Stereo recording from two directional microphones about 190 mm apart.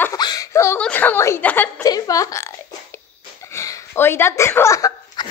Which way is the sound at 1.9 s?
20° left (ahead or behind).